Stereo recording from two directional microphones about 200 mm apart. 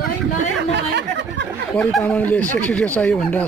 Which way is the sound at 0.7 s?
60° right (ahead or behind).